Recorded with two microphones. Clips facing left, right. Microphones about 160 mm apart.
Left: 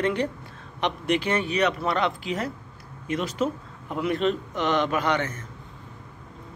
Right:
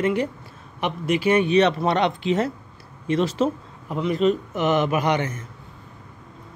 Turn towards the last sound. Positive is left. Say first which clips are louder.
# right 3 dB
turn(degrees=-15)  # may be behind; listen again after turning